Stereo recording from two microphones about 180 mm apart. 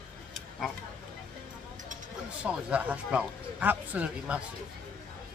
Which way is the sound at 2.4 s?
5° right (ahead or behind).